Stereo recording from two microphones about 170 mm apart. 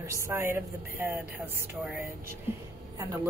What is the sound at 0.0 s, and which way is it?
Speech, 15° right (ahead or behind).